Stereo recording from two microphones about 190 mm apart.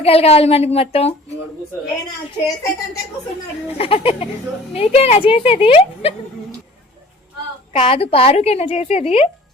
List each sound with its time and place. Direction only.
0.0 s a woman's voice: 30° left (ahead or behind)
3.8 s a woman's voice: 30° left (ahead or behind)
7.7 s a woman's voice: 30° left (ahead or behind)